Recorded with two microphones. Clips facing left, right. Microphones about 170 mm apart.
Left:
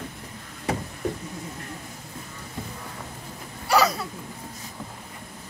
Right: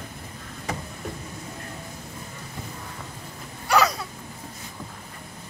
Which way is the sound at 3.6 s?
5° left (ahead or behind).